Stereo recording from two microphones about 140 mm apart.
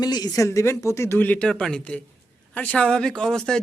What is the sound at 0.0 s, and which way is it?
A man's voice, 30° left (ahead or behind).